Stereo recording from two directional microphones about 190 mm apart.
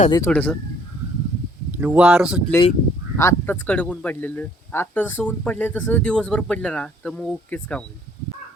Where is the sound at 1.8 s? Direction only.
5° right (ahead or behind).